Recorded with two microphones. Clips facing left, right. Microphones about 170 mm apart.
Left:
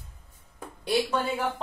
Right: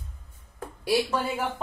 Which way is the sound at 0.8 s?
5° right (ahead or behind).